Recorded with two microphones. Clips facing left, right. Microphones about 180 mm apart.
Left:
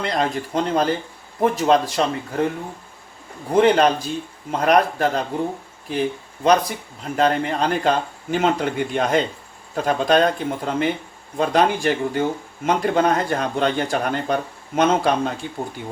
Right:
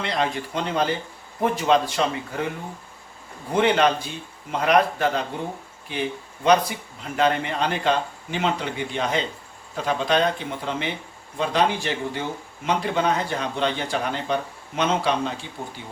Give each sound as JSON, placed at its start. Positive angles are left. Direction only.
{"t": 0.0, "sound": "a man's voice", "side_deg": 45}
{"t": 3.5, "sound": "a man's voice", "side_deg": 40}
{"t": 6.4, "sound": "a man's voice", "side_deg": 40}